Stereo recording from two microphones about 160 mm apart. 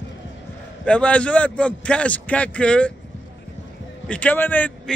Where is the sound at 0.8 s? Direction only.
5° left (ahead or behind).